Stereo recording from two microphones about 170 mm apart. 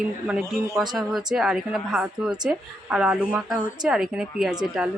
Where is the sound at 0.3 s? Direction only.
Centre (ahead or behind).